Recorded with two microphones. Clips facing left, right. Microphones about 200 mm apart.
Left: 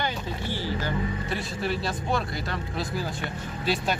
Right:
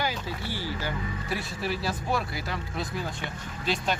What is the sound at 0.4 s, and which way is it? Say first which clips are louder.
Music: left 4 dB; 15° left (ahead or behind).